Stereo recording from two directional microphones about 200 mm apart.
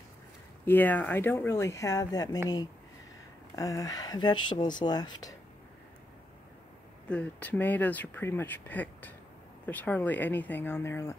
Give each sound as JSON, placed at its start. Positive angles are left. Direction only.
{"t": 0.7, "sound": "speech", "side_deg": 10}
{"t": 3.5, "sound": "speech", "side_deg": 15}
{"t": 7.1, "sound": "speech", "side_deg": 5}